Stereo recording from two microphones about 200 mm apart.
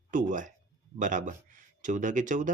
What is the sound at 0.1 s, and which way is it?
Speech, 40° right (ahead or behind).